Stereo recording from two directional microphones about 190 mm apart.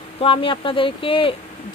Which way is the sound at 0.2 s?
25° left (ahead or behind).